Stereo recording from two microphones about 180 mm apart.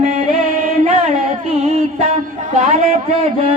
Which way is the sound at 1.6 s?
40° right (ahead or behind).